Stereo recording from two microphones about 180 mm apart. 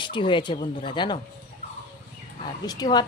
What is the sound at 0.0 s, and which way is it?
A woman's voice, 25° left (ahead or behind).